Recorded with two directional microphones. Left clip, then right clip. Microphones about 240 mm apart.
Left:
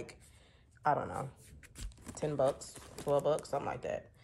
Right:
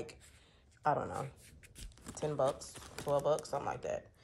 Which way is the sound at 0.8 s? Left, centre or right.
Centre.